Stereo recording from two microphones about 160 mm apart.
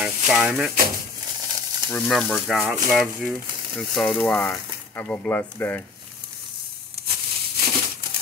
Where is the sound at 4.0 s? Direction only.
5° left (ahead or behind).